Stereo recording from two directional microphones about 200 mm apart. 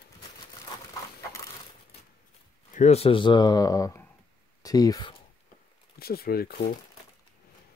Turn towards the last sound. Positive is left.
turn(degrees=50)  # may be behind; listen again after turning